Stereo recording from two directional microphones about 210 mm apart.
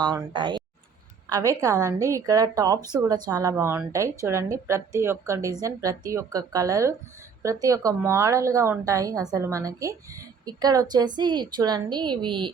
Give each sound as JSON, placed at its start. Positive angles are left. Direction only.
{"t": 0.0, "sound": "speech", "side_deg": -20}